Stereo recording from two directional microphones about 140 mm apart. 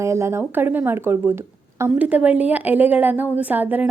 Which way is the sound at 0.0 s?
20° right (ahead or behind).